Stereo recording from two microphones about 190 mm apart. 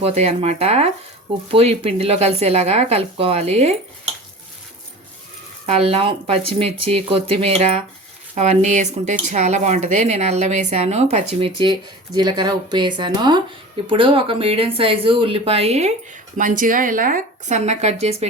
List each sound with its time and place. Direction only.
0.0 s speech: 35° right (ahead or behind)
5.6 s speech: 30° right (ahead or behind)
16.4 s speech: 45° right (ahead or behind)